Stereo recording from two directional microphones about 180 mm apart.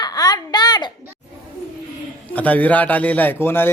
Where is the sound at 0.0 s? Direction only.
20° left (ahead or behind).